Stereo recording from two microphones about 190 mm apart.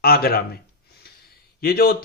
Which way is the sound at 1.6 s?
55° left (ahead or behind).